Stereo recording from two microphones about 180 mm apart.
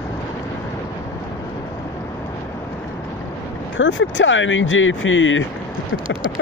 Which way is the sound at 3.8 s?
90° left.